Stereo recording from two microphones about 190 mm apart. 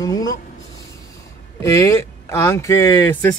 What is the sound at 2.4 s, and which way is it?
Speech, 15° left (ahead or behind).